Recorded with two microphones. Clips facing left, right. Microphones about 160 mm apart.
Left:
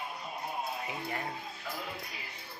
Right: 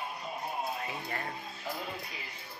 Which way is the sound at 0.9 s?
15° left (ahead or behind).